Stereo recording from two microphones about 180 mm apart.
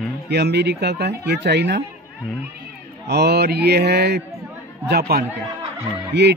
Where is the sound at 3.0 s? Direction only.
65° right (ahead or behind).